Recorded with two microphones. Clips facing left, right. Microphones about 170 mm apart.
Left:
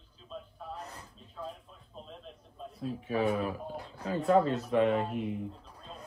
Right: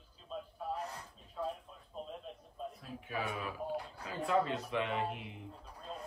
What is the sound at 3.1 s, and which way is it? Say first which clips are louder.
Speech: left 9 dB; 40° left (ahead or behind).